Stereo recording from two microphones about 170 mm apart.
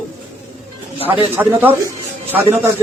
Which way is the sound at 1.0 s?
10° right (ahead or behind).